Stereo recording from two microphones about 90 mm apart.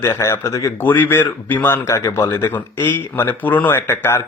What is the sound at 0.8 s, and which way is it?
A man's voice, 25° left (ahead or behind).